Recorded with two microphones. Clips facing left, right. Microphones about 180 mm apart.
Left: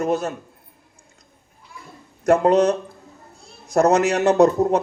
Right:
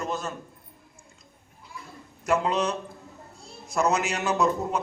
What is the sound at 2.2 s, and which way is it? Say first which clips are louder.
A man's voice: left 9 dB; 65° left (ahead or behind).